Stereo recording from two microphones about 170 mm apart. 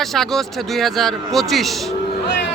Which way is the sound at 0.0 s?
Centre (ahead or behind).